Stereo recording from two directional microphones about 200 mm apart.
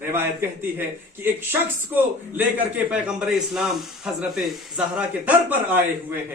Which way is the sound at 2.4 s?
10° right (ahead or behind).